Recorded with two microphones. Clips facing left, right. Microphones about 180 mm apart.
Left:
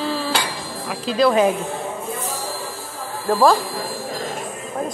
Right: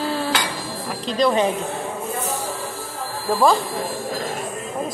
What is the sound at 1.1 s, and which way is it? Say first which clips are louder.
Speech: left 3 dB; 5° left (ahead or behind).